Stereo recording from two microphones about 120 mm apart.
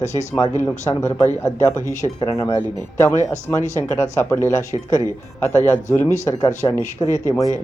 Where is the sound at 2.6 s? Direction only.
20° left (ahead or behind).